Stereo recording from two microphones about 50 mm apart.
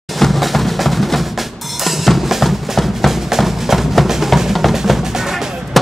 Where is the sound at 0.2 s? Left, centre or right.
Centre.